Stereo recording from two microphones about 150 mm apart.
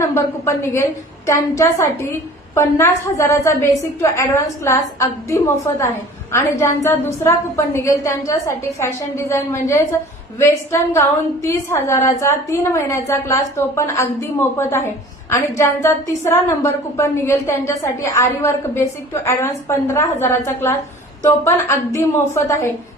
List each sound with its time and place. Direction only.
0.0 s a woman's voice: 20° left (ahead or behind)